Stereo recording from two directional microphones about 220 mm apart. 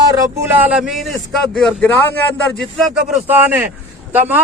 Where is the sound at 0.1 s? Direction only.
15° right (ahead or behind).